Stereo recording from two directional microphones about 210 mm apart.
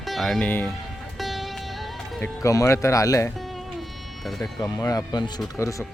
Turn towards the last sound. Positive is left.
turn(degrees=15)  # may be behind; listen again after turning